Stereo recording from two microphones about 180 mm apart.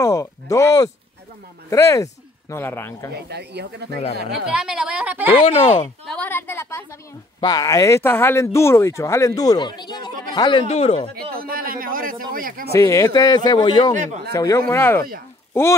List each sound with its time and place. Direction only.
0.0 s a sound: 20° left (ahead or behind)
1.7 s speech: 15° left (ahead or behind)
3.1 s speech: 65° right (ahead or behind)
4.5 s a woman's voice: 5° right (ahead or behind)
5.4 s speech: 35° left (ahead or behind)
6.0 s speech: 10° left (ahead or behind); by 11.1 s 35° left (ahead or behind)
11.3 s a man's voice: 55° right (ahead or behind)
12.7 s speech: 15° left (ahead or behind)
13.9 s a man's voice: 40° right (ahead or behind)
14.3 s speech: 20° left (ahead or behind)